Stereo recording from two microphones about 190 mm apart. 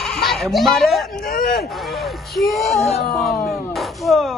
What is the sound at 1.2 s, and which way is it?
Speech, 55° left (ahead or behind).